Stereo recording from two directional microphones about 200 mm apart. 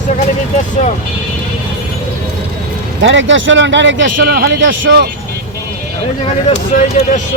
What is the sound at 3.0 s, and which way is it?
Speech, 70° right (ahead or behind).